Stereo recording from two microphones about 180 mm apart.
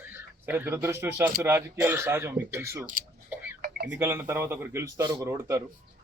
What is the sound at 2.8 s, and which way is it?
Speech, 50° right (ahead or behind).